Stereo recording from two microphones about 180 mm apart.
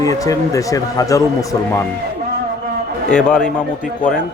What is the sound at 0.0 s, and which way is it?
Speech, 20° left (ahead or behind).